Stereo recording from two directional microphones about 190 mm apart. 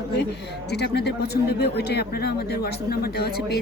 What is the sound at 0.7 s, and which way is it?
Speech, 60° left (ahead or behind).